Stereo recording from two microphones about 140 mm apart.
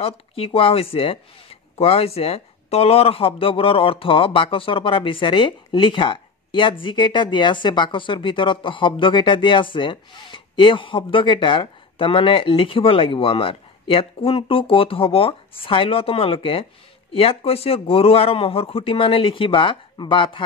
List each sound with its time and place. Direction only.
0.0 s speech: 40° left (ahead or behind)